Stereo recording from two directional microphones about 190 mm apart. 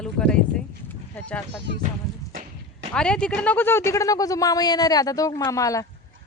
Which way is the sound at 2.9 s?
5° left (ahead or behind).